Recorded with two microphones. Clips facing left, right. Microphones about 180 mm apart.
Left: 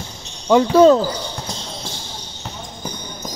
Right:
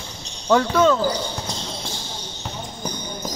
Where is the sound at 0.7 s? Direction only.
35° left (ahead or behind).